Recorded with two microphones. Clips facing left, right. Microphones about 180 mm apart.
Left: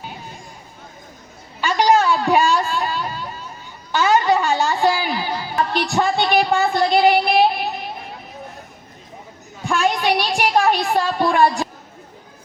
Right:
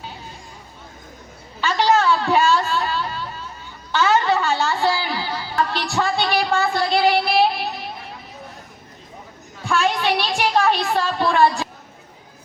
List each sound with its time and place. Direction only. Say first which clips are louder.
1.6 s a sound: left 2 dB; 15° left (ahead or behind)
3.9 s a woman's voice: left 2 dB; 15° left (ahead or behind)
9.6 s speech: left 1 dB; 15° left (ahead or behind)